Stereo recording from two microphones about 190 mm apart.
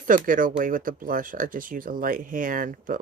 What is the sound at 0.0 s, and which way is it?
Speech, 45° right (ahead or behind).